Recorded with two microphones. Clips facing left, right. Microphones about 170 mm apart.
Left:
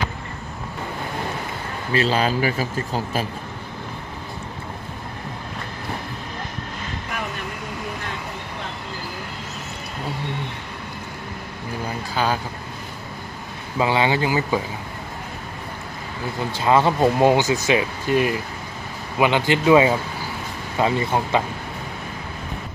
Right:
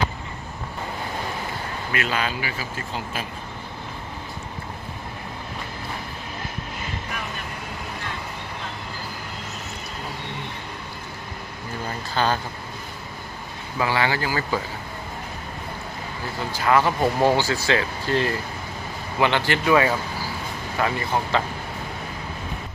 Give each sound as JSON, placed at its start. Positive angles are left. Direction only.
{"t": 1.9, "sound": "speech", "side_deg": 30}
{"t": 12.1, "sound": "speech", "side_deg": 5}
{"t": 13.7, "sound": "speech", "side_deg": 20}
{"t": 16.5, "sound": "speech", "side_deg": 25}